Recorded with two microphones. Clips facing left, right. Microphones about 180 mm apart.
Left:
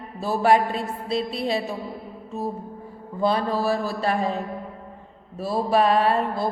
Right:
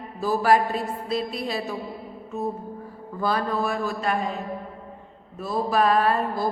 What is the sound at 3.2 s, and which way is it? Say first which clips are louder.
A man's voice: left 2 dB; 25° left (ahead or behind).